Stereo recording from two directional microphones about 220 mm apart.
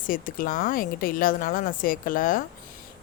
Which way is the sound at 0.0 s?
40° left (ahead or behind).